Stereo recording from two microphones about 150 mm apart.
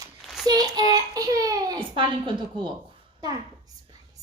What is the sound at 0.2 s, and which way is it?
Child singing, centre (ahead or behind).